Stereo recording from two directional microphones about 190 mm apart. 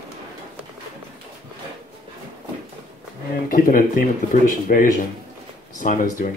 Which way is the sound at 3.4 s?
50° left (ahead or behind).